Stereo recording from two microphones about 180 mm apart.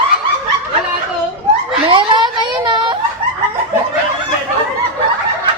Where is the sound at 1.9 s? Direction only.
25° right (ahead or behind).